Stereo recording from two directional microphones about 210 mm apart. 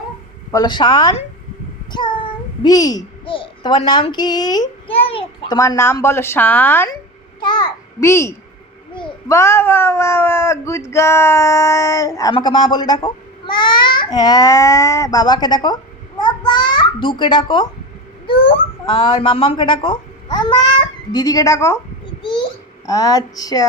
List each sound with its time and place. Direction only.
0.5 s a woman's voice: 20° left (ahead or behind)
7.3 s a sound: 20° left (ahead or behind)
9.0 s a child's voice: 20° left (ahead or behind)